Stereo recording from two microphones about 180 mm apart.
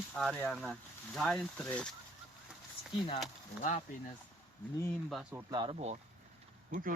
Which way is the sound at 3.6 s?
40° left (ahead or behind).